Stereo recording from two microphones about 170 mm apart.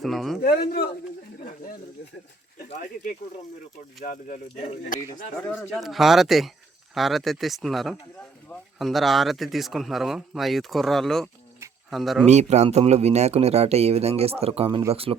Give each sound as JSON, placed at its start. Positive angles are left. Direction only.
{"t": 0.0, "sound": "speech", "side_deg": 0}
{"t": 0.4, "sound": "speech", "side_deg": 60}
{"t": 2.6, "sound": "speech", "side_deg": 50}
{"t": 5.7, "sound": "speech", "side_deg": 0}
{"t": 12.2, "sound": "speech", "side_deg": -40}